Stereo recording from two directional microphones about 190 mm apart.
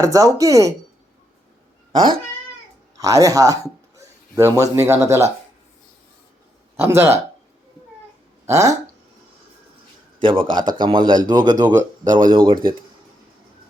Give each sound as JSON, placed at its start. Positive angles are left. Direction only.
{"t": 0.0, "sound": "speech", "side_deg": -15}
{"t": 3.0, "sound": "speech", "side_deg": -15}
{"t": 6.7, "sound": "speech", "side_deg": -15}
{"t": 8.4, "sound": "speech", "side_deg": -15}
{"t": 10.2, "sound": "speech", "side_deg": -25}